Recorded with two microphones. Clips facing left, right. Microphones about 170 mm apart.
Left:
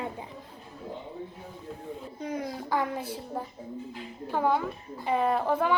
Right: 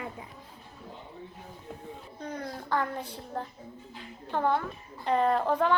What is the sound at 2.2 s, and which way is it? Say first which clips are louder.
A child's voice: left 3 dB; 10° left (ahead or behind).